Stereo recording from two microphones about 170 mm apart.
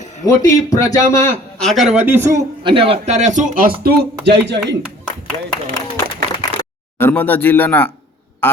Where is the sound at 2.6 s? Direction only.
30° right (ahead or behind); by 4.8 s 90° right.